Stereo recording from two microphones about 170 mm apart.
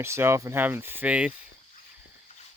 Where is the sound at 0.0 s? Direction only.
15° right (ahead or behind).